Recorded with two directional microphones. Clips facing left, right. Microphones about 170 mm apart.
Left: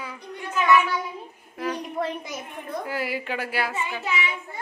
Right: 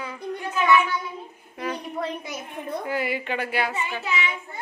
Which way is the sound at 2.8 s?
5° left (ahead or behind).